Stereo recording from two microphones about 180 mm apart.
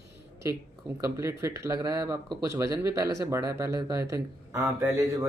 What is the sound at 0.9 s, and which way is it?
Speech, 15° right (ahead or behind).